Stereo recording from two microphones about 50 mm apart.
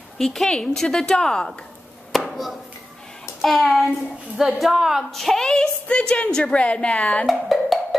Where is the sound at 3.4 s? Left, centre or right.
Centre.